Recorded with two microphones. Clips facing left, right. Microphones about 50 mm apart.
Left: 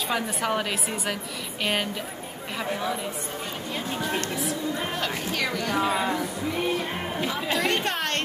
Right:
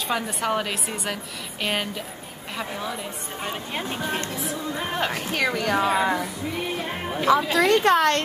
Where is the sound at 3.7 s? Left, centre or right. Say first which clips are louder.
Even; right.